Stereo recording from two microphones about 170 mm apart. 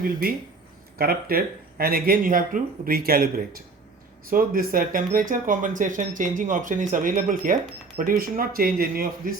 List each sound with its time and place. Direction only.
0.9 s a man's voice: 65° right (ahead or behind)